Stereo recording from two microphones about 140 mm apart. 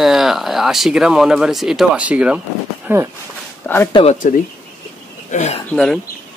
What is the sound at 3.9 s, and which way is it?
Speech, 45° left (ahead or behind).